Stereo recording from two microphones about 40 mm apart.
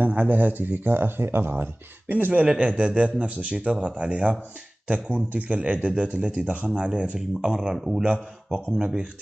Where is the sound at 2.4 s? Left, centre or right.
Right.